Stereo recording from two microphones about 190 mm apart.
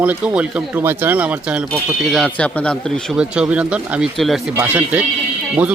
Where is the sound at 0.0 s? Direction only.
5° right (ahead or behind).